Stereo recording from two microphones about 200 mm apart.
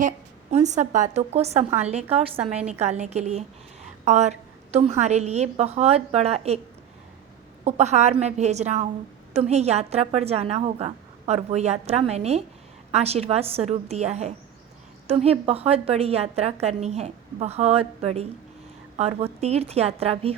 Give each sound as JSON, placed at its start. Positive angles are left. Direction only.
{"t": 0.5, "sound": "a woman's voice", "side_deg": -35}
{"t": 7.6, "sound": "a woman's voice", "side_deg": -35}